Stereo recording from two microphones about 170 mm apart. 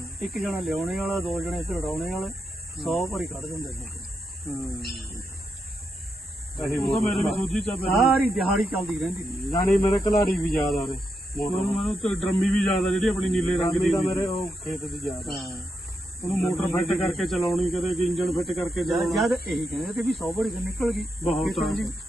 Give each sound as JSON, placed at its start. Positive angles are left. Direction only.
{"t": 0.2, "sound": "speech", "side_deg": 0}
{"t": 6.8, "sound": "speech", "side_deg": 0}
{"t": 11.5, "sound": "speech", "side_deg": 35}
{"t": 11.8, "sound": "speech", "side_deg": 0}